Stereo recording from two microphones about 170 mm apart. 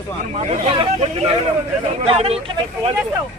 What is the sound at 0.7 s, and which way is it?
Speech, 30° right (ahead or behind).